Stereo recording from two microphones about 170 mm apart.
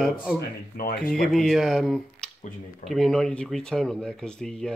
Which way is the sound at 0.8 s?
60° left (ahead or behind).